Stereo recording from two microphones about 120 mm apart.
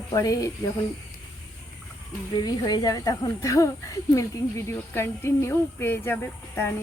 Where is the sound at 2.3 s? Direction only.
35° left (ahead or behind); by 6.1 s 20° left (ahead or behind).